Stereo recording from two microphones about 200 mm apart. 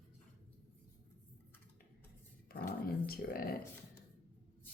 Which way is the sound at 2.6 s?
50° left (ahead or behind).